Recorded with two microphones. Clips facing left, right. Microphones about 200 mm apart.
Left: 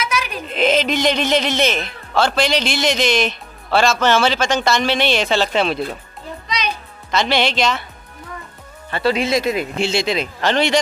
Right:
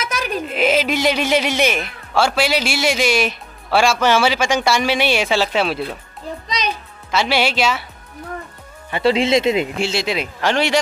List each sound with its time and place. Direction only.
0.0 s a sound: 45° right (ahead or behind)
0.5 s a man's voice: 5° right (ahead or behind)
7.1 s a man's voice: 5° right (ahead or behind)
8.9 s speech: 25° right (ahead or behind)
9.8 s a man's voice: 5° right (ahead or behind)